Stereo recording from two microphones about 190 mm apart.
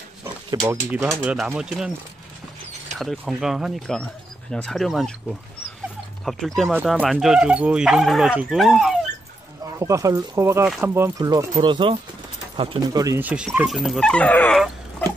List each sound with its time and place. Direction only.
0.2 s speech: 15° right (ahead or behind)
3.0 s speech: centre (ahead or behind)
6.2 s speech: centre (ahead or behind)
9.8 s speech: 15° right (ahead or behind); by 14.6 s 10° left (ahead or behind)